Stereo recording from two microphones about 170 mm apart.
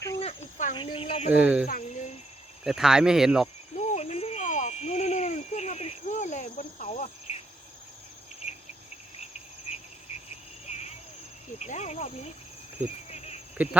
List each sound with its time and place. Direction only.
0.2 s cricket: 35° left (ahead or behind)
1.4 s speech: 10° right (ahead or behind)
1.6 s cricket: 50° left (ahead or behind)
2.6 s speech: 5° right (ahead or behind)
3.8 s a sound: 40° left (ahead or behind)
7.3 s cricket: 40° left (ahead or behind)
9.1 s cricket: 40° left (ahead or behind)
10.2 s frog: 40° left (ahead or behind)
11.6 s cricket: 40° left (ahead or behind)